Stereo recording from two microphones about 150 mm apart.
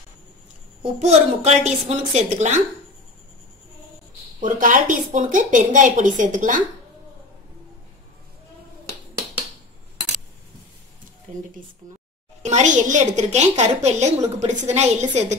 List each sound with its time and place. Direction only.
1.0 s a woman's voice: 45° right (ahead or behind)
4.4 s a woman's voice: 65° right (ahead or behind)
11.3 s a sound: 50° right (ahead or behind)
12.4 s a woman's voice: 50° right (ahead or behind)